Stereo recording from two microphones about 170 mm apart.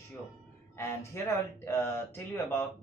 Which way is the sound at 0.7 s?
15° left (ahead or behind).